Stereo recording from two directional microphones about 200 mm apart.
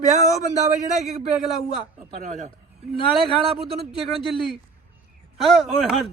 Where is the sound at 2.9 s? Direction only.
25° left (ahead or behind).